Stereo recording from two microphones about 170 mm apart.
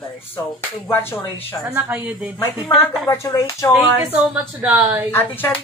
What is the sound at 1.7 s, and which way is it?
Speech, 10° right (ahead or behind).